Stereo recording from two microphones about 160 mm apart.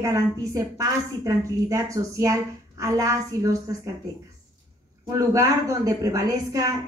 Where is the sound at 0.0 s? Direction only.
20° right (ahead or behind).